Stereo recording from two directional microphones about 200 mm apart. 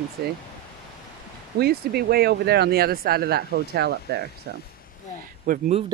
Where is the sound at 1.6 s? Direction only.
50° right (ahead or behind).